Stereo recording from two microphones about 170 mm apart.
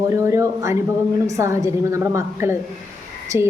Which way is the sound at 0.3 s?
20° right (ahead or behind).